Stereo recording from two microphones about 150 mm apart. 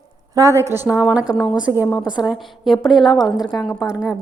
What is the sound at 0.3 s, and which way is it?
A woman's voice, 20° right (ahead or behind).